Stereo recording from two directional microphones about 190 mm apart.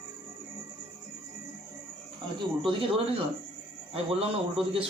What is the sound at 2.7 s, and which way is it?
Speech, 25° right (ahead or behind).